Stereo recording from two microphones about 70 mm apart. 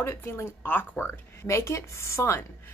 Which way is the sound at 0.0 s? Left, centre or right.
Left.